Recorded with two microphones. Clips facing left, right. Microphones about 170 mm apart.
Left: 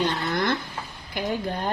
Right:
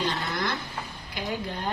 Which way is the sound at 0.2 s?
55° left (ahead or behind).